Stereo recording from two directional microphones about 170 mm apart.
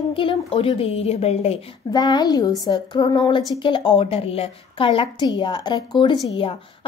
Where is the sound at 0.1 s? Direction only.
30° left (ahead or behind).